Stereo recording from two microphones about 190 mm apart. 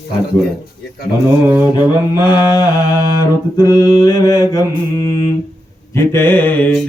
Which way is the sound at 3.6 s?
20° left (ahead or behind).